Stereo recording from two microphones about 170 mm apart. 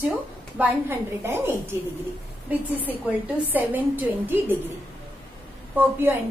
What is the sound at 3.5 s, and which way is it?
A woman's voice, 10° right (ahead or behind).